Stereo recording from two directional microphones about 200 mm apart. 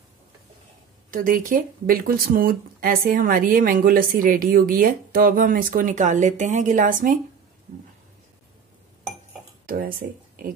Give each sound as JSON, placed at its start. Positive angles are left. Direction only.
{"t": 1.1, "sound": "speech", "side_deg": -45}
{"t": 9.7, "sound": "speech", "side_deg": -45}